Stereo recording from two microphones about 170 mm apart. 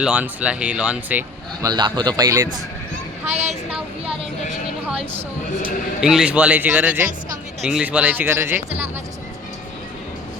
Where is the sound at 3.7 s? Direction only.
5° right (ahead or behind).